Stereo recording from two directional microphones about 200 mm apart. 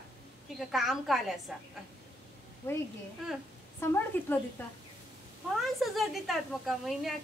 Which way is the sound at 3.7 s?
10° left (ahead or behind).